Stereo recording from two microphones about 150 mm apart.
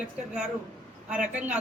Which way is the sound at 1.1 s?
10° right (ahead or behind).